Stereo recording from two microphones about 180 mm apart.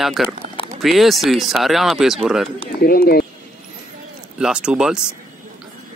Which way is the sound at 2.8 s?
55° left (ahead or behind).